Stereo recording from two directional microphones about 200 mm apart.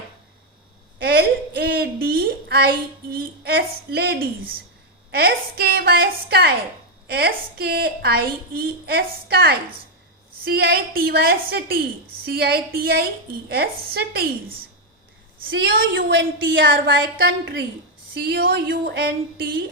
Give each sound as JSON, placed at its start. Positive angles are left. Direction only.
{"t": 0.9, "sound": "a woman's voice", "side_deg": -50}
{"t": 15.4, "sound": "a woman's voice", "side_deg": -50}